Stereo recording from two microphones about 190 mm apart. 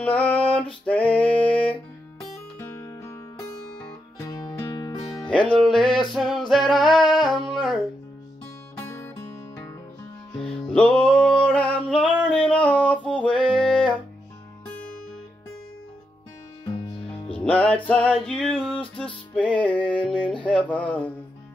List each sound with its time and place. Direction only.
0.0 s female singing: 10° left (ahead or behind)
0.8 s music: 5° left (ahead or behind); by 5.3 s 25° left (ahead or behind)
5.5 s music: 5° left (ahead or behind)
6.1 s singing: centre (ahead or behind)
8.7 s music: 15° left (ahead or behind)
10.4 s music: 5° left (ahead or behind)
17.3 s music: 5° left (ahead or behind)
18.2 s a sound: 5° left (ahead or behind)
18.9 s music: 5° left (ahead or behind)
20.4 s speech: 5° left (ahead or behind)